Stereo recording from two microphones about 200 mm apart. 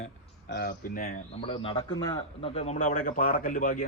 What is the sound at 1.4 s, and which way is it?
Speech, 25° left (ahead or behind).